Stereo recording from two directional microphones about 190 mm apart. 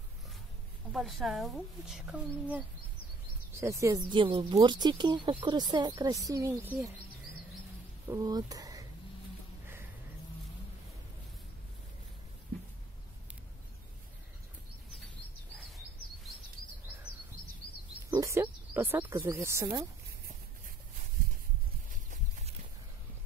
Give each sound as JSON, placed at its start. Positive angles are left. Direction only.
{"t": 0.9, "sound": "a woman's voice", "side_deg": 0}
{"t": 3.6, "sound": "a woman's voice", "side_deg": -15}
{"t": 8.1, "sound": "speech", "side_deg": -20}
{"t": 18.1, "sound": "a sound", "side_deg": -15}